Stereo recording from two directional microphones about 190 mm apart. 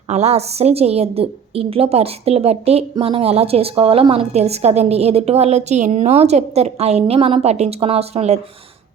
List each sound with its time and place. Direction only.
0.1 s a woman's voice: 35° right (ahead or behind)